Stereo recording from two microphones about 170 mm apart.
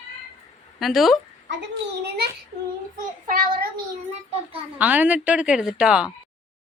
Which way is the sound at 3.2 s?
55° right (ahead or behind).